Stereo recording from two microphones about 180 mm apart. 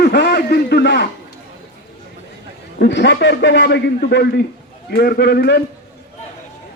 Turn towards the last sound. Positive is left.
turn(degrees=65)  # may be behind; listen again after turning